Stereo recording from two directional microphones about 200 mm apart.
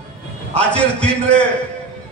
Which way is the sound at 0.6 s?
5° left (ahead or behind).